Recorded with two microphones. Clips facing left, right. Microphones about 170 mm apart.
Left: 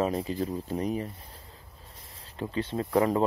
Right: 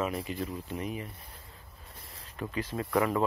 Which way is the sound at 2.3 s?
30° left (ahead or behind).